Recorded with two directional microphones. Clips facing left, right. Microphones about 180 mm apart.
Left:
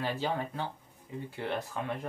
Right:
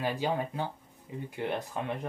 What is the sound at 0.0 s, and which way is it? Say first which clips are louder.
Speech: right 2 dB; 15° right (ahead or behind).